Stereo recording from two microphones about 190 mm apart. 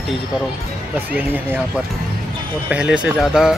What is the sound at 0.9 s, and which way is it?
Speech, 10° right (ahead or behind).